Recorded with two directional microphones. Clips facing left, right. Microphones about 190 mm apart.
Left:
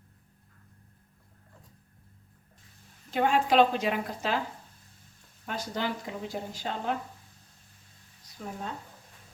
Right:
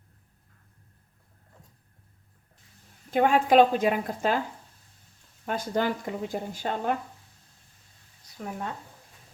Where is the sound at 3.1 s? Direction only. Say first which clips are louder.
Right 4 dB; 50° right (ahead or behind).